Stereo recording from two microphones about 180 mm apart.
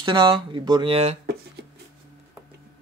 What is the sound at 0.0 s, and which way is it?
Speech, 25° right (ahead or behind).